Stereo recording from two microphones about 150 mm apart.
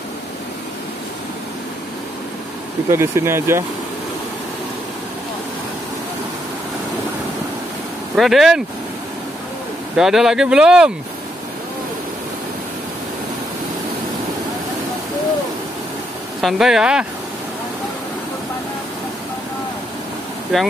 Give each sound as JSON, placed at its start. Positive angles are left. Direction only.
{"t": 2.9, "sound": "speech", "side_deg": -20}
{"t": 8.2, "sound": "speech", "side_deg": 0}
{"t": 9.9, "sound": "speech", "side_deg": -5}
{"t": 16.3, "sound": "speech", "side_deg": 0}